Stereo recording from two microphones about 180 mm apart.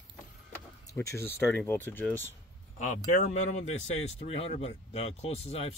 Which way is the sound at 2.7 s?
40° left (ahead or behind).